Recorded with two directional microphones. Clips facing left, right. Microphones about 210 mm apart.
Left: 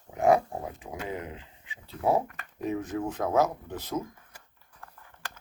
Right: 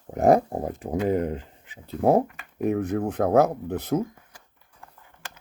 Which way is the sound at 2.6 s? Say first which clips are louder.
Right 6 dB; 60° right (ahead or behind).